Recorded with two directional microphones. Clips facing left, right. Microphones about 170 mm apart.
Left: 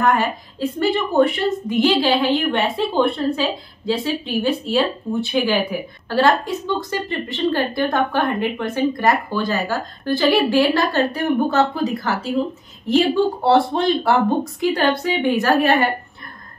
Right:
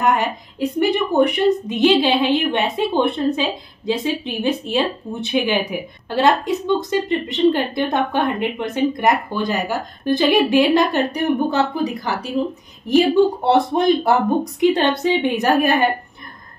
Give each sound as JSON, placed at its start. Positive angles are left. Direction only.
{"t": 0.0, "sound": "a woman's voice", "side_deg": -20}